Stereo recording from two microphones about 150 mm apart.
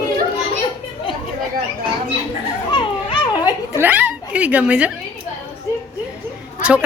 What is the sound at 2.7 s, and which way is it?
Children playing, 35° left (ahead or behind).